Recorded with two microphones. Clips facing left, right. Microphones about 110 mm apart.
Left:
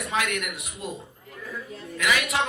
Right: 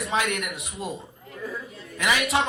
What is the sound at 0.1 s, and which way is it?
Speech, 25° right (ahead or behind).